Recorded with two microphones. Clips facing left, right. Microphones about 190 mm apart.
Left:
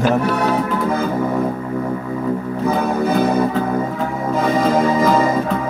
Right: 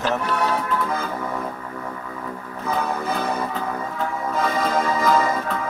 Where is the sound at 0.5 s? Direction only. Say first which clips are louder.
Left 6 dB; 30° left (ahead or behind).